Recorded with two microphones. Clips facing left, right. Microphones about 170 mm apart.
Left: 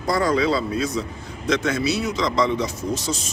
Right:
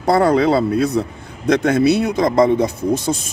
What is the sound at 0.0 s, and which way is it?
Speech, 60° right (ahead or behind).